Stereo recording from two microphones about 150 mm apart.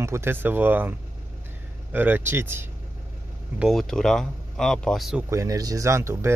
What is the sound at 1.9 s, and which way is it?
Speech, 15° right (ahead or behind).